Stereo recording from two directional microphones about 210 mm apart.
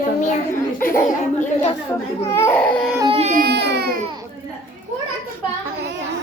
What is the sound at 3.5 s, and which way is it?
Speech, 55° right (ahead or behind).